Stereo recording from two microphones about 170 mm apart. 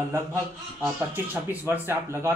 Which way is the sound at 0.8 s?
10° right (ahead or behind).